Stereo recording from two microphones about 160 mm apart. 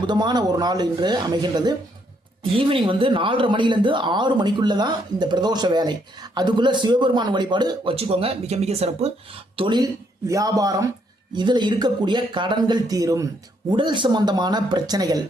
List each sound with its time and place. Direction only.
0.1 s speech: 25° right (ahead or behind)
9.6 s speech: 25° right (ahead or behind)